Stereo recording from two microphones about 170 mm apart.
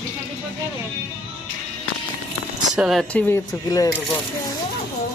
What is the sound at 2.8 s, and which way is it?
Speech, centre (ahead or behind).